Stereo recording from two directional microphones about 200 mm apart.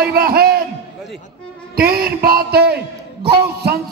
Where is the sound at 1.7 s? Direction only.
50° right (ahead or behind).